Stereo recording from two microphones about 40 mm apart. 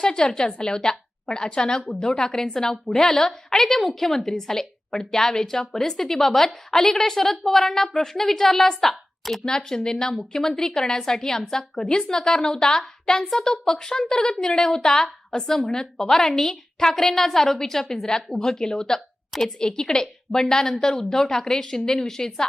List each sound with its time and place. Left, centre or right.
0.0 s a woman's voice: left; by 9.4 s centre
9.6 s a woman's voice: centre
18.9 s a sound: centre
19.5 s a woman's voice: centre